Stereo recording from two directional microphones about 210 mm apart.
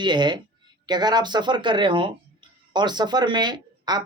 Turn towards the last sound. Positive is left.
turn(degrees=-20)  # may be behind; listen again after turning